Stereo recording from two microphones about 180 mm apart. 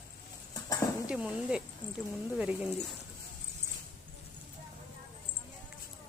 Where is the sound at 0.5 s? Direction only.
20° left (ahead or behind).